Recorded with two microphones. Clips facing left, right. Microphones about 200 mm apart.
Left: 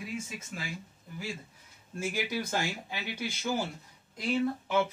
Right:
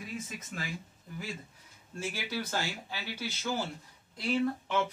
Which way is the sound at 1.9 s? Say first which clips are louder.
Left 3 dB; 15° left (ahead or behind).